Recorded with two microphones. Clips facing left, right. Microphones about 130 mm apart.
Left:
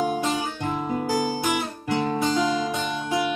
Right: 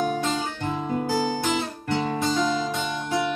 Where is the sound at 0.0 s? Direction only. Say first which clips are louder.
Left 1 dB; 10° left (ahead or behind).